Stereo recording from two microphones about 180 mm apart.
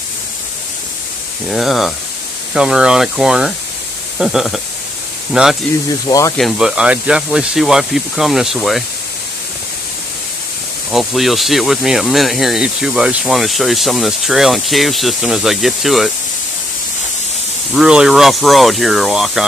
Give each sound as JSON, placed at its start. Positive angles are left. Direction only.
{"t": 1.5, "sound": "speech", "side_deg": 0}
{"t": 6.1, "sound": "speech", "side_deg": 20}
{"t": 6.3, "sound": "speech", "side_deg": 0}
{"t": 10.9, "sound": "speech", "side_deg": 0}
{"t": 17.7, "sound": "speech", "side_deg": -5}